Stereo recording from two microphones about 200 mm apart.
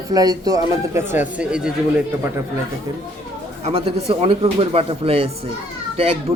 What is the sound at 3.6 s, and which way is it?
A man's voice, 30° right (ahead or behind).